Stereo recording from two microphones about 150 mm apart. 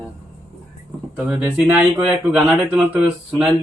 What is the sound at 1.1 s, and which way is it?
A man's voice, 15° right (ahead or behind).